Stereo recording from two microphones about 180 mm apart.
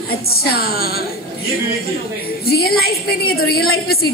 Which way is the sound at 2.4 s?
60° left (ahead or behind).